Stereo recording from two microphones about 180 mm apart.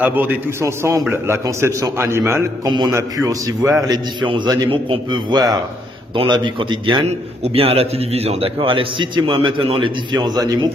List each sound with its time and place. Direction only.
0.0 s a man's voice: 10° right (ahead or behind)